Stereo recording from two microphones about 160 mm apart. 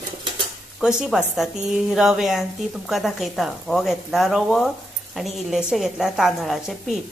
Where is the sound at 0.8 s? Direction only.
5° right (ahead or behind).